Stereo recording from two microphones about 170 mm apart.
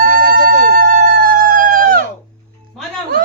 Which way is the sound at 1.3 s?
55° right (ahead or behind).